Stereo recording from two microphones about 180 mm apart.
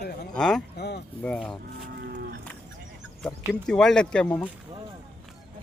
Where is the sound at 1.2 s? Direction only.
5° left (ahead or behind).